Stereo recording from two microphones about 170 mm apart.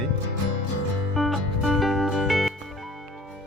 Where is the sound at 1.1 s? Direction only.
Centre (ahead or behind).